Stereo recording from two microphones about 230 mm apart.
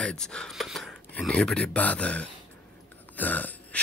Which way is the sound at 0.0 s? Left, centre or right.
Centre.